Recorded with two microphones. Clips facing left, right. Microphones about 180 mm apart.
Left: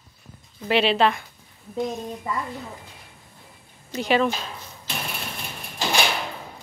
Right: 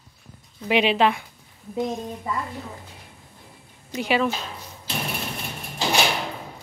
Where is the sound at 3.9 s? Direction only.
10° right (ahead or behind).